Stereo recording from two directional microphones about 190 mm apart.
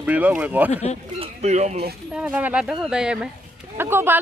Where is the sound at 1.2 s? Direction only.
35° right (ahead or behind).